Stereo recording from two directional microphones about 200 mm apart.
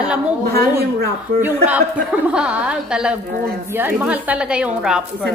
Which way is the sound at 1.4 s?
10° right (ahead or behind).